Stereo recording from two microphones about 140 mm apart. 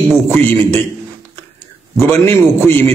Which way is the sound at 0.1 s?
15° left (ahead or behind).